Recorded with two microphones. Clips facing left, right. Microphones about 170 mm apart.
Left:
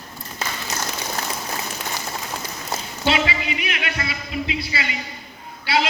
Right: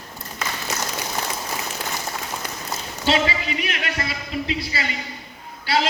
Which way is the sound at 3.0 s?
40° right (ahead or behind).